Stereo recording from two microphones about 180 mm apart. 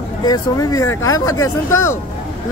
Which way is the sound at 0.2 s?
20° left (ahead or behind).